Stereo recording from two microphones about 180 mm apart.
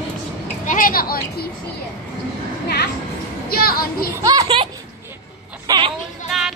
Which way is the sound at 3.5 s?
55° left (ahead or behind).